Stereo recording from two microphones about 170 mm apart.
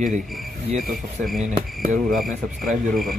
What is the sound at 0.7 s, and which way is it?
Rub, centre (ahead or behind).